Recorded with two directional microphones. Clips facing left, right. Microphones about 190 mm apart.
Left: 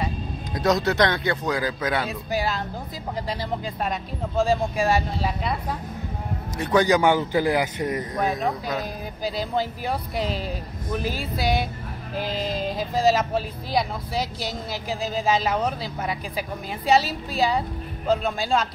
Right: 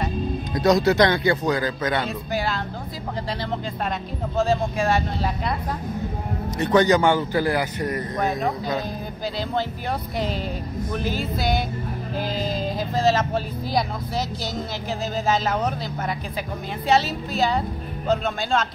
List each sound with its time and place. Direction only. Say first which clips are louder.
0.6 s speech: right 3 dB; centre (ahead or behind)
4.7 s a man's voice: even; 15° left (ahead or behind)
6.6 s a man's voice: right 1 dB; 5° left (ahead or behind)
8.2 s speech: right 1 dB; centre (ahead or behind)
10.1 s speech: right 2 dB; 5° left (ahead or behind)
12.4 s speech: even; centre (ahead or behind)
15.2 s a man's voice: even; 10° left (ahead or behind)
16.8 s a woman's voice: even; 35° left (ahead or behind)
17.4 s speech: even; 5° left (ahead or behind)